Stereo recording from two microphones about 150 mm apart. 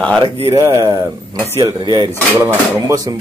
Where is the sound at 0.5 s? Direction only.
20° right (ahead or behind).